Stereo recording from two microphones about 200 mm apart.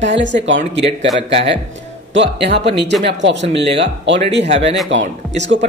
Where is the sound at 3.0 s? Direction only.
65° right (ahead or behind).